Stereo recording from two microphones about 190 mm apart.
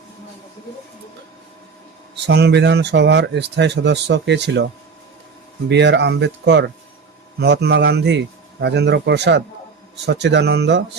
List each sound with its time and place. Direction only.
2.1 s speech: 60° right (ahead or behind)
5.6 s speech: 65° right (ahead or behind)
7.3 s speech: 65° right (ahead or behind)